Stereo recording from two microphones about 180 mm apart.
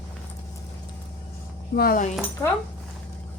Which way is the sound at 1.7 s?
55° left (ahead or behind).